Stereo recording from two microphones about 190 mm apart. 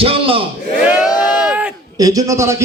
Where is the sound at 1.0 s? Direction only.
5° right (ahead or behind).